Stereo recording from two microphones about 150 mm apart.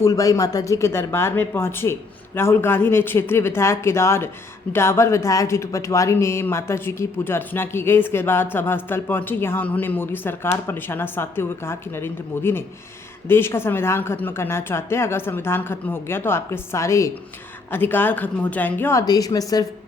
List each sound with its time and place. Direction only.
0.0 s speech: 20° left (ahead or behind)